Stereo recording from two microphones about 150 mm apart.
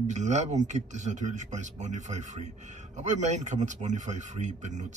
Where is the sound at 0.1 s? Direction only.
50° right (ahead or behind).